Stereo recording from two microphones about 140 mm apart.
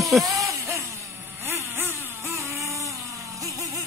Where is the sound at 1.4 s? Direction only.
15° right (ahead or behind).